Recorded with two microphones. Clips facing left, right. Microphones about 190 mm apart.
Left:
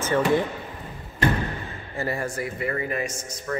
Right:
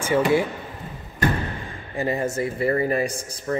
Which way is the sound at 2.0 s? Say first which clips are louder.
Right 4 dB; 20° right (ahead or behind).